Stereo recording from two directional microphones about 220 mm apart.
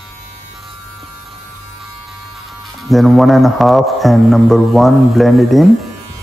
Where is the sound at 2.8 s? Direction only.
Centre (ahead or behind).